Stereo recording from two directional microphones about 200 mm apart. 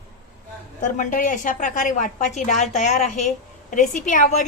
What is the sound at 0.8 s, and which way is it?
A woman's voice, 40° left (ahead or behind).